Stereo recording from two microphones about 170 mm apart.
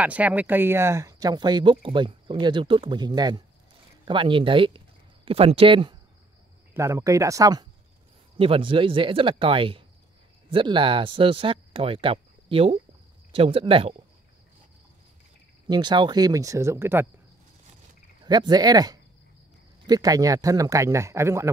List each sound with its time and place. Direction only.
0.0 s speech: 10° right (ahead or behind); by 5.9 s 30° right (ahead or behind)
6.7 s speech: 15° right (ahead or behind)
8.4 s speech: 30° right (ahead or behind)
15.7 s speech: 25° right (ahead or behind)
18.2 s speech: 25° right (ahead or behind)